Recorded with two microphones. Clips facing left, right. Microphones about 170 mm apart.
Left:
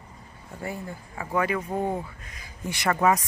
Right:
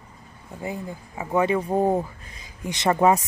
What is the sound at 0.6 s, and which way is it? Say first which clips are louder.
Speech: right 3 dB; 20° right (ahead or behind).